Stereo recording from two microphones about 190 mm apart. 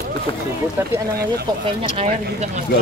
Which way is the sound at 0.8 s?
15° right (ahead or behind).